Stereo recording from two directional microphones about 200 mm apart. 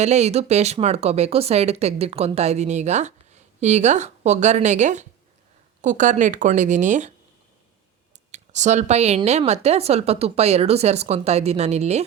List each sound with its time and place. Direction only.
0.0 s speech: 35° right (ahead or behind)
8.3 s speech: 35° right (ahead or behind)